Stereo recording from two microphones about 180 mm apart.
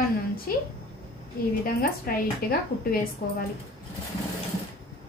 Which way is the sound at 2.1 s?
55° left (ahead or behind).